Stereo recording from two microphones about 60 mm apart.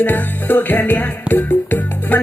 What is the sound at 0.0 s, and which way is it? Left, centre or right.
Music, left.